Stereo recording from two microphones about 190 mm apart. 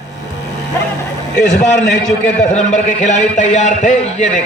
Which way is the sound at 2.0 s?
40° left (ahead or behind).